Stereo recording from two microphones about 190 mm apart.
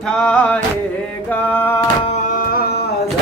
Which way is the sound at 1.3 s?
10° left (ahead or behind).